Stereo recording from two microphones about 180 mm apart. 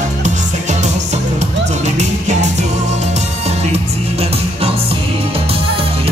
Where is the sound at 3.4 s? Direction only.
35° right (ahead or behind).